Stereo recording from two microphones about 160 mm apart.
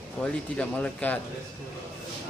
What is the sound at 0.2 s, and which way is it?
Speech, 5° left (ahead or behind).